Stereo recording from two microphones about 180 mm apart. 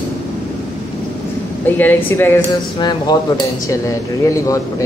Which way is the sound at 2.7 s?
20° left (ahead or behind).